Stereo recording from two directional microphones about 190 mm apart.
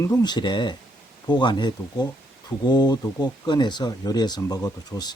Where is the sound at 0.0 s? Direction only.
20° left (ahead or behind).